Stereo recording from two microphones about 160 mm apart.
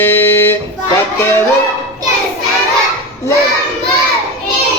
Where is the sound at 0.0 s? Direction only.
15° left (ahead or behind).